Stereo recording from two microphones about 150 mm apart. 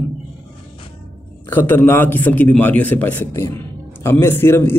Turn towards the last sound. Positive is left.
turn(degrees=15)  # may be behind; listen again after turning